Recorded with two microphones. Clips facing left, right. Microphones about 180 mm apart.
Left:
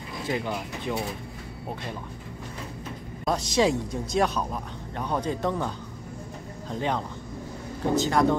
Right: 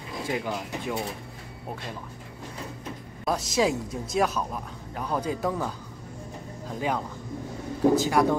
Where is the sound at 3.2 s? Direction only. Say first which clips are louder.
Left 1 dB; 5° right (ahead or behind).